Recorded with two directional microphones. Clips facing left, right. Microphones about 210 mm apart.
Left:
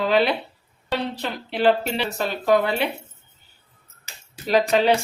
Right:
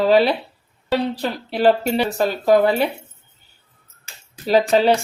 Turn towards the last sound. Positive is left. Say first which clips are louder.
# right 3 dB
turn(degrees=-35)  # may be behind; listen again after turning